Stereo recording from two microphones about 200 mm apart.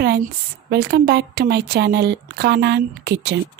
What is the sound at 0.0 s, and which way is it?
A woman's voice, 55° right (ahead or behind).